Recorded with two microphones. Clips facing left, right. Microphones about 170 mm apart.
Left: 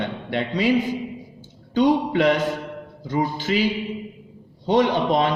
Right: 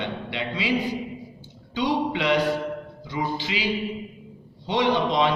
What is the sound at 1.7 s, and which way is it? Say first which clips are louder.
A man's voice: left 6 dB; 45° left (ahead or behind).